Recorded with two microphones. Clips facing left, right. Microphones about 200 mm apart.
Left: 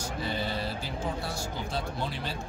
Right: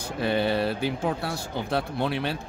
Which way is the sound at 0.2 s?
60° right (ahead or behind).